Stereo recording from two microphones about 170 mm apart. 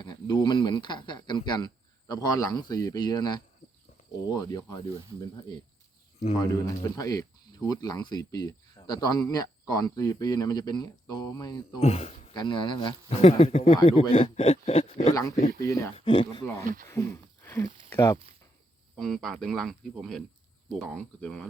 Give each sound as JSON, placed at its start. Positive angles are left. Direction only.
{"t": 0.0, "sound": "speech", "side_deg": 25}
{"t": 6.4, "sound": "speech", "side_deg": 20}
{"t": 11.8, "sound": "speech", "side_deg": 40}
{"t": 12.3, "sound": "speech", "side_deg": 25}
{"t": 15.1, "sound": "speech", "side_deg": 20}
{"t": 16.0, "sound": "speech", "side_deg": 30}
{"t": 16.9, "sound": "a sound", "side_deg": 15}
{"t": 17.8, "sound": "speech", "side_deg": 15}
{"t": 18.9, "sound": "speech", "side_deg": 0}